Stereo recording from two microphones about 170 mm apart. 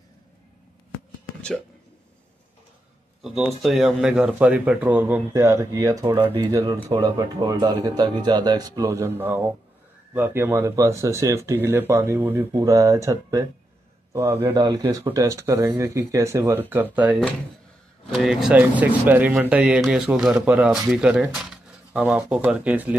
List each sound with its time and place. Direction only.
3.2 s speech: centre (ahead or behind)